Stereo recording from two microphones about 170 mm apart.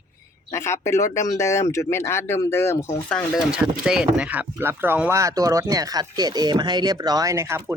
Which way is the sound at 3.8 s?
5° right (ahead or behind).